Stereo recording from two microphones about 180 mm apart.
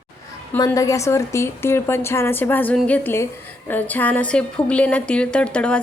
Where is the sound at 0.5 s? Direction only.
15° left (ahead or behind).